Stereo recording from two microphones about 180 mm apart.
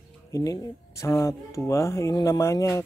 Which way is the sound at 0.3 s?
20° left (ahead or behind).